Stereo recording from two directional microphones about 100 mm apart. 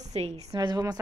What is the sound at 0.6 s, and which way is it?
Speech, 45° right (ahead or behind).